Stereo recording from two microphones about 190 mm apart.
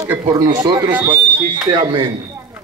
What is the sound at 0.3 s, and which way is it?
Speech, 20° right (ahead or behind).